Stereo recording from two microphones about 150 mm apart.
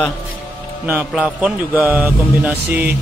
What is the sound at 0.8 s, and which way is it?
Speech, 10° right (ahead or behind).